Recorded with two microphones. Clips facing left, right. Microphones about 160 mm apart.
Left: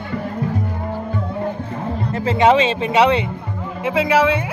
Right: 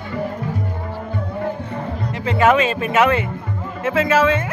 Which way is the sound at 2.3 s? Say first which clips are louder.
Left 1 dB; 20° left (ahead or behind).